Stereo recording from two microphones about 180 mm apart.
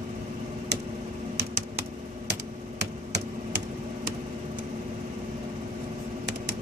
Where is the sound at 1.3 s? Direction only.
55° right (ahead or behind).